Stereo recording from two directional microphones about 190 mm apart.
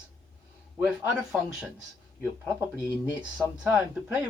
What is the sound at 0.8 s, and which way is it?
Speech, 5° right (ahead or behind).